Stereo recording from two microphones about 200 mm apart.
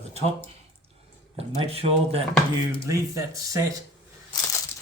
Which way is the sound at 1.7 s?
30° right (ahead or behind).